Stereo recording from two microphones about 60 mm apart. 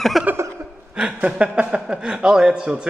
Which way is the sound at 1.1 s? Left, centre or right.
Centre.